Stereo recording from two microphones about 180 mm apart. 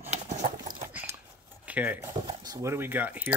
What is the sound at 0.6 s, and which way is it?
Dog, 10° right (ahead or behind).